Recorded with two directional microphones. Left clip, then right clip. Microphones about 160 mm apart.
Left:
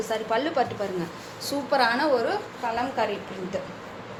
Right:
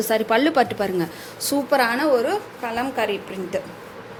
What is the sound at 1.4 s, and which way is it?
A woman's voice, 45° right (ahead or behind).